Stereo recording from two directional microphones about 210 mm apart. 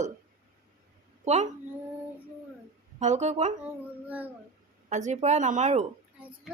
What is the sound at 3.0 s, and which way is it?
Speech, 35° right (ahead or behind).